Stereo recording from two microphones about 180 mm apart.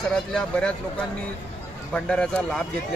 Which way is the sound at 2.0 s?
5° left (ahead or behind).